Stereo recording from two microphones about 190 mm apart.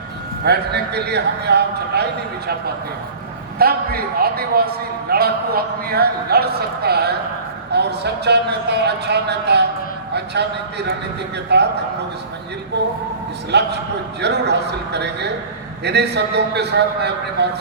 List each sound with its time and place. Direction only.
0.4 s a man's voice: 60° right (ahead or behind)
3.6 s a man's voice: 55° right (ahead or behind)
12.8 s a man's voice: 60° right (ahead or behind)